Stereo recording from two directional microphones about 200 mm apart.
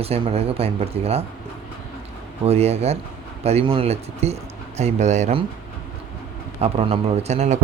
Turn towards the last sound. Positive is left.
turn(degrees=-35)  # may be behind; listen again after turning